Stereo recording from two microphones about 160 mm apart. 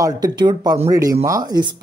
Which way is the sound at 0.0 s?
25° right (ahead or behind).